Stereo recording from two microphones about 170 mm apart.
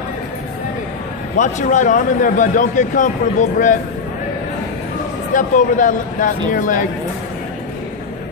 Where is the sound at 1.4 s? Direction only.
45° left (ahead or behind).